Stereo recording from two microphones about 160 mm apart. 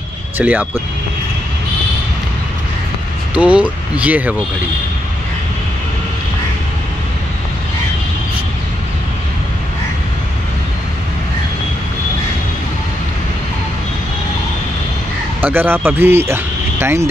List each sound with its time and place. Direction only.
0.4 s speech: 10° right (ahead or behind)
3.3 s speech: 10° right (ahead or behind)
15.4 s speech: 15° right (ahead or behind)